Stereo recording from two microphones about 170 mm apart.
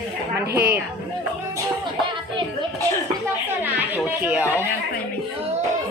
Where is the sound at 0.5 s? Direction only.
65° right (ahead or behind).